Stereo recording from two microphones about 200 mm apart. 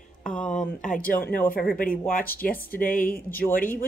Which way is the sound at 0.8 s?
40° left (ahead or behind).